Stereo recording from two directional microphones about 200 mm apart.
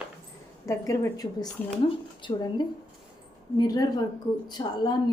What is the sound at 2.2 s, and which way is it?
A woman's voice, 20° left (ahead or behind).